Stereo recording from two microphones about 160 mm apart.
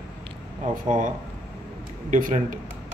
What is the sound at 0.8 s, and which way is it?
Speech, 55° right (ahead or behind).